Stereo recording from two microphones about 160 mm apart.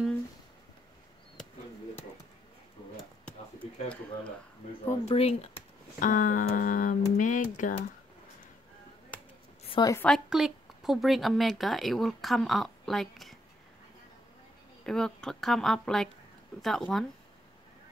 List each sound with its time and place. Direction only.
3.3 s a sound: 5° left (ahead or behind)
5.0 s speech: 40° left (ahead or behind)
5.9 s speech: 55° left (ahead or behind)
9.8 s a woman's voice: 20° left (ahead or behind)
10.0 s a woman's voice: centre (ahead or behind)
14.9 s a woman's voice: 5° left (ahead or behind)